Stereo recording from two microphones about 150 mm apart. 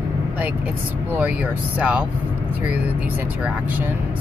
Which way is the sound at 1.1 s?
10° right (ahead or behind).